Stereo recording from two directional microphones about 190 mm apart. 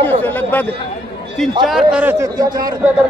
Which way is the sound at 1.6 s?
5° right (ahead or behind).